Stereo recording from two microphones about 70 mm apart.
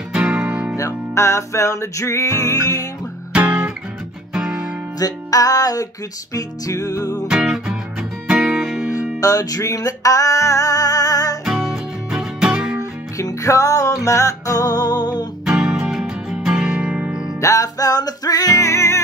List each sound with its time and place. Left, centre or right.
0.1 s music: centre
0.7 s music: left
3.3 s guitar: centre
4.3 s music: centre
4.9 s music: left
7.2 s music: centre
9.2 s music: left
11.4 s music: centre
13.2 s music: left
15.4 s music: centre
17.4 s music: left
18.7 s music: left